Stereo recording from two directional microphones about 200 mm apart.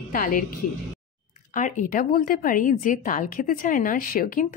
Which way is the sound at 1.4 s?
40° left (ahead or behind).